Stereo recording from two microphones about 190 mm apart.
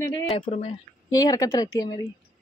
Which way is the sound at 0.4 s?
35° left (ahead or behind).